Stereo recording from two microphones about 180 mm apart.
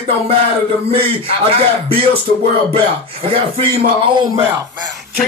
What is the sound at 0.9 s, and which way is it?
A man's voice, 30° right (ahead or behind).